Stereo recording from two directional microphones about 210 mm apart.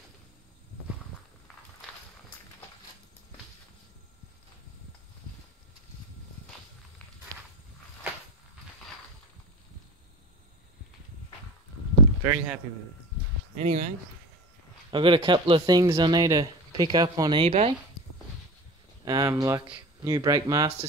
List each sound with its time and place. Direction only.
12.2 s a man's voice: 5° right (ahead or behind)
13.6 s speech: 35° right (ahead or behind)
14.9 s speech: 25° right (ahead or behind)
19.0 s speech: 20° right (ahead or behind)